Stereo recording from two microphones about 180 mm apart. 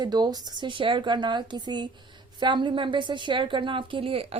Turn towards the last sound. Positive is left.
turn(degrees=-30)  # may be behind; listen again after turning